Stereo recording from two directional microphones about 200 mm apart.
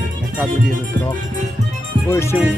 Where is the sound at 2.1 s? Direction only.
15° left (ahead or behind).